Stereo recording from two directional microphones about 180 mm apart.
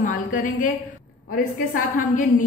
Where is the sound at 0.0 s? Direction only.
45° left (ahead or behind).